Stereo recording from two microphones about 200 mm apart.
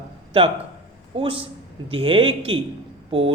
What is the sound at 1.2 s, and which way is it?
A man's voice, 25° right (ahead or behind).